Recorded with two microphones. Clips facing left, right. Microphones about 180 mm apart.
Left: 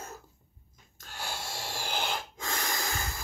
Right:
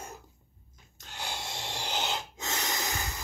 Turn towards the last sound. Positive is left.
turn(degrees=-20)  # may be behind; listen again after turning